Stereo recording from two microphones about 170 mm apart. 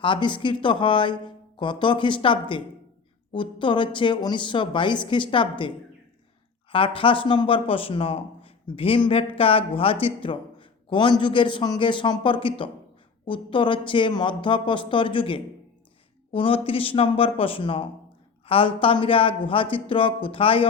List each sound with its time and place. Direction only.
0.0 s a man's voice: 30° left (ahead or behind)